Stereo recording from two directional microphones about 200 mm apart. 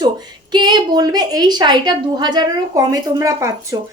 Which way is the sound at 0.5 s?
20° right (ahead or behind).